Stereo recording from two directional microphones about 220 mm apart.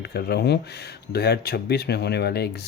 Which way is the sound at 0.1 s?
45° left (ahead or behind).